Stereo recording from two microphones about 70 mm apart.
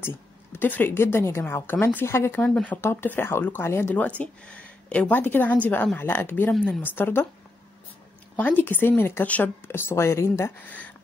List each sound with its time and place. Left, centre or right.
0.0 s a woman's voice: left
2.3 s speech: centre
2.8 s a woman's voice: left
3.9 s a woman's voice: left
8.4 s a woman's voice: left
10.7 s speech: left